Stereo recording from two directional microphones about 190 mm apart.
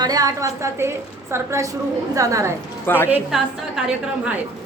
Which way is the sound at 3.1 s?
5° right (ahead or behind).